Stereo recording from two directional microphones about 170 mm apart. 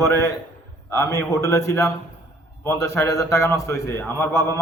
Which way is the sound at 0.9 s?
15° left (ahead or behind).